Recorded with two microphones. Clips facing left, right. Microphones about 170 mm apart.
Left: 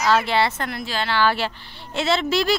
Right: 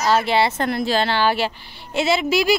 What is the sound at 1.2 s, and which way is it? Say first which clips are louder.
Speech: right 1 dB; 15° right (ahead or behind).